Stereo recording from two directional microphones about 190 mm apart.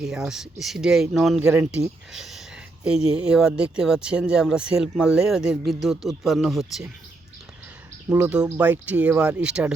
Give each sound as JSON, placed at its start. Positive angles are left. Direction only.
{"t": 0.0, "sound": "speech", "side_deg": -5}
{"t": 1.5, "sound": "speech", "side_deg": -15}
{"t": 8.1, "sound": "speech", "side_deg": -5}